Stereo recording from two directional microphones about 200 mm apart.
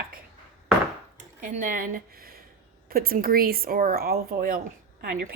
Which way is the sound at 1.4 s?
40° right (ahead or behind).